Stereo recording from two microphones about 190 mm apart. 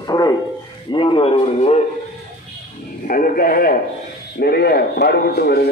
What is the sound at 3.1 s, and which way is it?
A man's voice, 50° left (ahead or behind).